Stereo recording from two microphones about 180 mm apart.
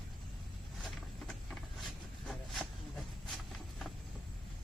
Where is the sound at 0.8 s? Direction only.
Centre (ahead or behind).